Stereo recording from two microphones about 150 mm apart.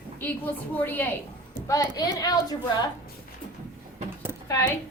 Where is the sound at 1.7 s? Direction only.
25° left (ahead or behind).